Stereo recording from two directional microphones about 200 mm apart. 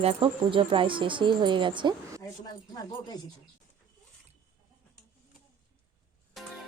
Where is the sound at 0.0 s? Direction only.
30° right (ahead or behind).